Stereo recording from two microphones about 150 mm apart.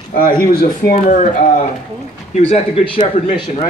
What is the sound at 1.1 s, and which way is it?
Speech, 55° left (ahead or behind).